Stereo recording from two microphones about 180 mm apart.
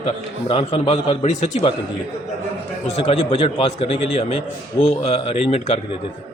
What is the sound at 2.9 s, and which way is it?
A man's voice, 35° left (ahead or behind).